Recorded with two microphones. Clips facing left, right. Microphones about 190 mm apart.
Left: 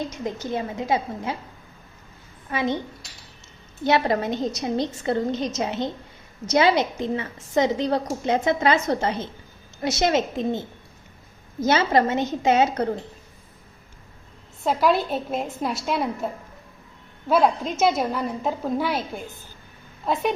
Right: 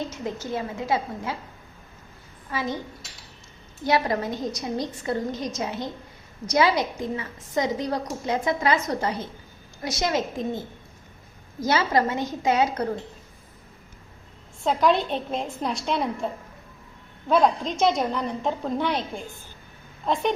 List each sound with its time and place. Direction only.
0.1 s a woman's voice: 15° left (ahead or behind)
2.5 s a woman's voice: 20° left (ahead or behind)
3.8 s a woman's voice: 25° left (ahead or behind)
11.6 s a woman's voice: 25° left (ahead or behind)
14.6 s a woman's voice: 5° left (ahead or behind)